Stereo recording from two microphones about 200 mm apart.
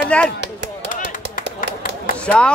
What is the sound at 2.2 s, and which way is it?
Speech, 5° left (ahead or behind).